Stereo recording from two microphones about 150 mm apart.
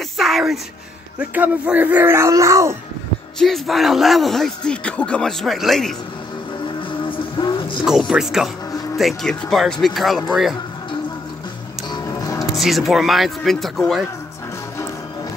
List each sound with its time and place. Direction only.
0.2 s a sound: centre (ahead or behind)
1.2 s speech: 10° right (ahead or behind)
3.3 s speech: centre (ahead or behind)
6.6 s vehicle: 35° left (ahead or behind)
8.1 s speech: 5° right (ahead or behind)
11.9 s music: 25° left (ahead or behind)
12.5 s speech: centre (ahead or behind)